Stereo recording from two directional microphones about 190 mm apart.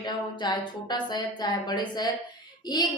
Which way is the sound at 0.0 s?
25° left (ahead or behind).